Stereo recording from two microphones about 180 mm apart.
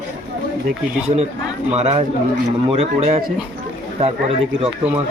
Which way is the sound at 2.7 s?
35° right (ahead or behind).